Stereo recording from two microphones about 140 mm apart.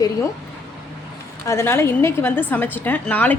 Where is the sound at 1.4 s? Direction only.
20° left (ahead or behind).